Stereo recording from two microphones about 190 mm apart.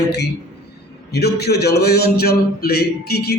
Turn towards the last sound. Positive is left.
turn(degrees=55)  # may be behind; listen again after turning